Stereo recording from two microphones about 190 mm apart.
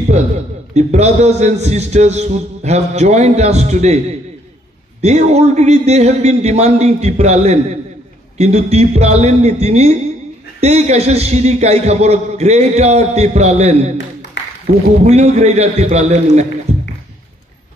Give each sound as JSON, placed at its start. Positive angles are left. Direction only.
{"t": 0.7, "sound": "a man's voice", "side_deg": -35}
{"t": 5.0, "sound": "a man's voice", "side_deg": -35}
{"t": 14.4, "sound": "a sound", "side_deg": 70}
{"t": 15.0, "sound": "a man's voice", "side_deg": -35}
{"t": 16.7, "sound": "music", "side_deg": -35}